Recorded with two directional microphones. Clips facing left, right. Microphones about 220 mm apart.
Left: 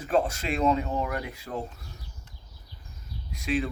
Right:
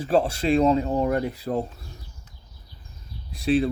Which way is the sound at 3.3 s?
35° right (ahead or behind).